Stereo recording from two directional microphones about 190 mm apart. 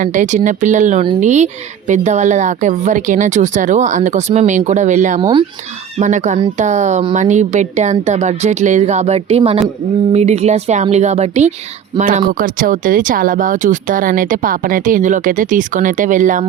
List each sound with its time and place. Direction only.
0.0 s speech: 40° right (ahead or behind)
5.2 s speech: 25° right (ahead or behind)
6.0 s speech: 40° right (ahead or behind)